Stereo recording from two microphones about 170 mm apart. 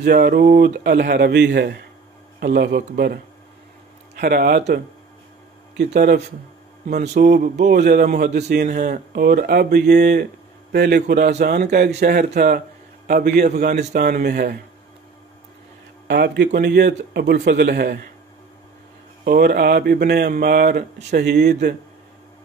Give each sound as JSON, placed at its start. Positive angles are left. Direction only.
{"t": 0.0, "sound": "speech", "side_deg": -65}
{"t": 7.2, "sound": "speech", "side_deg": -50}
{"t": 7.7, "sound": "speech", "side_deg": -65}
{"t": 8.6, "sound": "a man's voice", "side_deg": -55}
{"t": 11.0, "sound": "speech", "side_deg": -60}
{"t": 13.4, "sound": "speech", "side_deg": -50}
{"t": 16.1, "sound": "speech", "side_deg": -75}
{"t": 19.2, "sound": "speech", "side_deg": -65}